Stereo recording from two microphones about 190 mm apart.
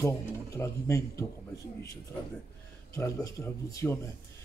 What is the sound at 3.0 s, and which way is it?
A man's voice, 15° left (ahead or behind).